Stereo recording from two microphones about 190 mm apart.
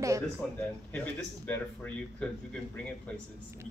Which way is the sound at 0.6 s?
10° left (ahead or behind).